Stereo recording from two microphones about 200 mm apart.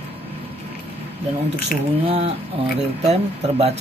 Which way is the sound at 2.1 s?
30° right (ahead or behind).